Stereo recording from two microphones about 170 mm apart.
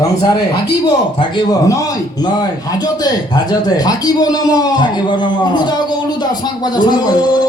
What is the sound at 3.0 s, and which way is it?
A man's voice, 25° left (ahead or behind).